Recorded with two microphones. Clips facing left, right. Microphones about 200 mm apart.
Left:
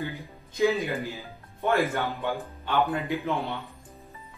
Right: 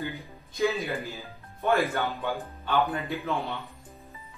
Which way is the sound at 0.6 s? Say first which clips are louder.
Left 3 dB; 15° left (ahead or behind).